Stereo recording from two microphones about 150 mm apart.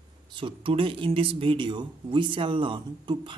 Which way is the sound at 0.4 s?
35° right (ahead or behind).